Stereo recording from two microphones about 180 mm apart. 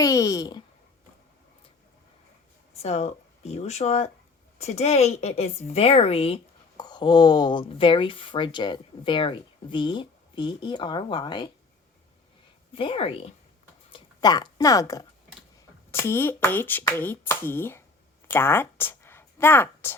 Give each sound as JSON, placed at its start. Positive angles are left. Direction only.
{"t": 0.0, "sound": "a woman's voice", "side_deg": 20}
{"t": 2.7, "sound": "a woman's voice", "side_deg": 35}
{"t": 12.7, "sound": "a woman's voice", "side_deg": 30}
{"t": 13.9, "sound": "speech", "side_deg": 25}
{"t": 18.3, "sound": "a sound", "side_deg": 10}